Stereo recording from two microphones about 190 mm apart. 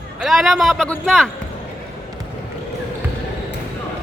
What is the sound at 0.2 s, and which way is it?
A man's voice, centre (ahead or behind).